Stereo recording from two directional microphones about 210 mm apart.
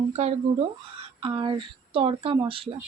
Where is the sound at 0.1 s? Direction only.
30° right (ahead or behind).